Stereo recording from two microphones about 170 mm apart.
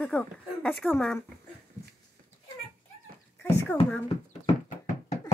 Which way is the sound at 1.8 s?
15° left (ahead or behind).